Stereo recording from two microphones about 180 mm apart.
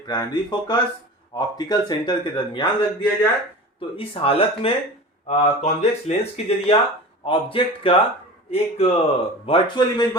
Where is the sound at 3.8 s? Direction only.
30° left (ahead or behind).